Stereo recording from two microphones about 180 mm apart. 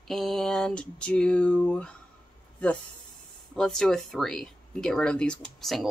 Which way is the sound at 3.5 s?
5° left (ahead or behind).